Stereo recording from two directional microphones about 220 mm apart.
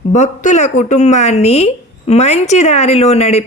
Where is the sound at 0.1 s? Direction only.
35° left (ahead or behind).